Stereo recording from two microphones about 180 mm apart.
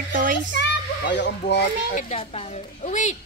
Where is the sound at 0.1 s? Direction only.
50° right (ahead or behind).